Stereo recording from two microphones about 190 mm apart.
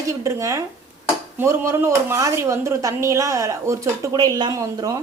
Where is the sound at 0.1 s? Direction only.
15° right (ahead or behind).